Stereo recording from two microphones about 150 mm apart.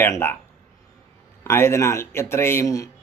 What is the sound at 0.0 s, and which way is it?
Speech, 15° left (ahead or behind).